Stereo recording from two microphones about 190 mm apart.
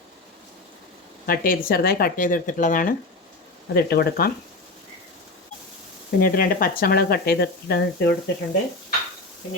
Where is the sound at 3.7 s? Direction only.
55° left (ahead or behind).